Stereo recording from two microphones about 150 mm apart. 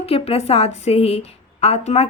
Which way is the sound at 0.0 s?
40° left (ahead or behind).